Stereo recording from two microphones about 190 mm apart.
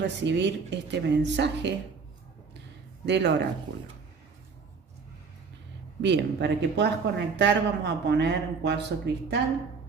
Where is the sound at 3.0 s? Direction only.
65° right (ahead or behind).